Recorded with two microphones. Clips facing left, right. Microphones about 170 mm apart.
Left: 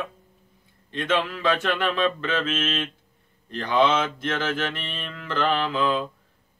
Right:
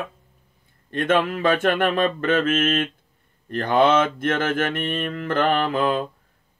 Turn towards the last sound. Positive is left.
turn(degrees=-50)  # may be behind; listen again after turning